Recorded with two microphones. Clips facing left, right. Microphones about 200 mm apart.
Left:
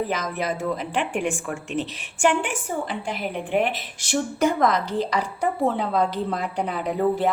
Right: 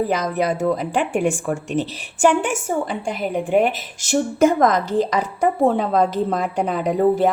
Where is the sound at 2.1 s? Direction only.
45° right (ahead or behind).